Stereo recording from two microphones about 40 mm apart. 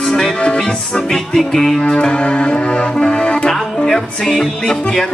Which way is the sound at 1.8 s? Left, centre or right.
Left.